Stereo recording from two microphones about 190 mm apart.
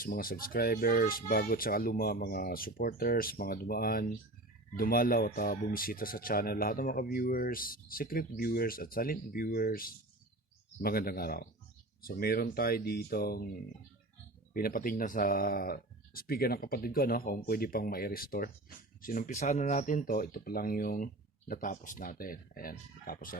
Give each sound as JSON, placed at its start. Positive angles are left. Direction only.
{"t": 0.0, "sound": "speech", "side_deg": 50}
{"t": 14.5, "sound": "speech", "side_deg": 50}